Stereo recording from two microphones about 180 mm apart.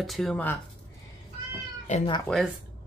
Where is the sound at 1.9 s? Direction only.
40° left (ahead or behind).